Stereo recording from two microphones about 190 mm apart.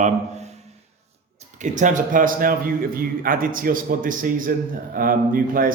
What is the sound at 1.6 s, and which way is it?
Speech, 40° right (ahead or behind).